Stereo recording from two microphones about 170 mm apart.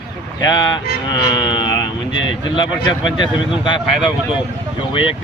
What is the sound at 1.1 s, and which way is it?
Music, 30° left (ahead or behind).